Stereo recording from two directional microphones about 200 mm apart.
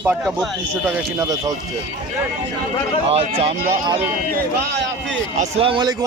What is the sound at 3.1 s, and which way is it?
Speech, 30° right (ahead or behind).